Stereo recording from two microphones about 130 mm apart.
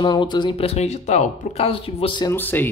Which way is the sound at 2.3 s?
15° left (ahead or behind).